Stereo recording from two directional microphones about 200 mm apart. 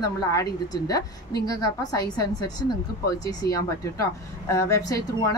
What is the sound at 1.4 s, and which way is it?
A woman's voice, 20° left (ahead or behind).